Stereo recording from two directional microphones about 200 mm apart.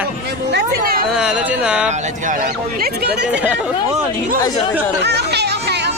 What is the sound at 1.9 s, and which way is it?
Speech, 40° right (ahead or behind).